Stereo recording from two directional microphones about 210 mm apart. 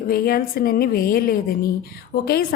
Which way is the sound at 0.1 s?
45° left (ahead or behind).